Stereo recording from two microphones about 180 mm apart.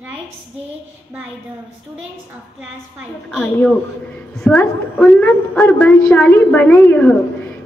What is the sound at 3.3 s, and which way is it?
A woman's voice, centre (ahead or behind).